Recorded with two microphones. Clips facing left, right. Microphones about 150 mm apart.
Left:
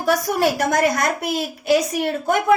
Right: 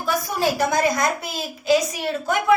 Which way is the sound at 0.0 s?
65° left (ahead or behind).